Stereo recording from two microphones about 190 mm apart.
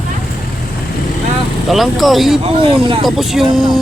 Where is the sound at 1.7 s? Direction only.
Centre (ahead or behind).